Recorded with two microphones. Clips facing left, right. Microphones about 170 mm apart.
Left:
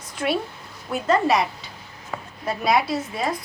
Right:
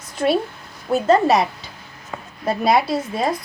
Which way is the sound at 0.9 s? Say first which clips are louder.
Right 5 dB; 35° right (ahead or behind).